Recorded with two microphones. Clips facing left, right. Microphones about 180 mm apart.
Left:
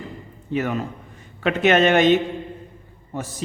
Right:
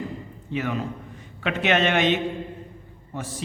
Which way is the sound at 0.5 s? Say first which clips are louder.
Left 3 dB; 45° left (ahead or behind).